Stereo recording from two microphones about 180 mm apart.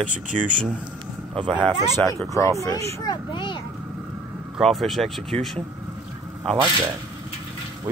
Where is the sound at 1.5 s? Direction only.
10° left (ahead or behind); by 3.6 s 25° left (ahead or behind).